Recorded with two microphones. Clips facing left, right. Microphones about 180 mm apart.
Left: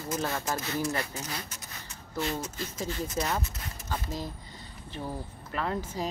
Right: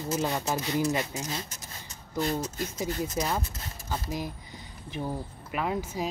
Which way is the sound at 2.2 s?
40° right (ahead or behind).